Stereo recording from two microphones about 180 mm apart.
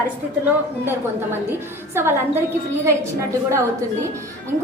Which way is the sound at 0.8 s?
10° right (ahead or behind).